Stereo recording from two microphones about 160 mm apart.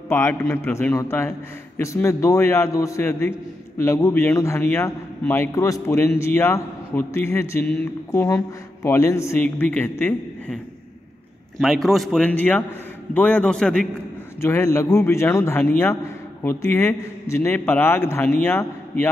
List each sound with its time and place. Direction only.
0.1 s a man's voice: 15° left (ahead or behind)
11.5 s a man's voice: centre (ahead or behind)
14.4 s a man's voice: 15° left (ahead or behind)